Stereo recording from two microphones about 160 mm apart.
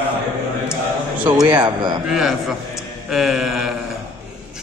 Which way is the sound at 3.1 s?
Centre (ahead or behind).